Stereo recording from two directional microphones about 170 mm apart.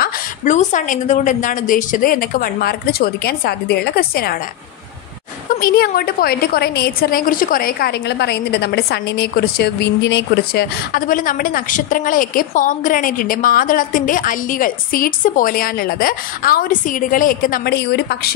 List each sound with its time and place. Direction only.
0.5 s a woman's voice: 45° left (ahead or behind); by 4.4 s 65° left (ahead or behind)
5.5 s a woman's voice: 60° left (ahead or behind)